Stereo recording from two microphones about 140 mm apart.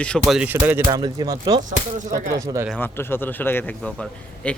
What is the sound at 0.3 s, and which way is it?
Speech, 10° right (ahead or behind).